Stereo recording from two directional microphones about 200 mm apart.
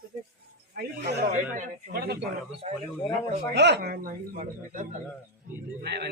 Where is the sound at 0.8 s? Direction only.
45° right (ahead or behind).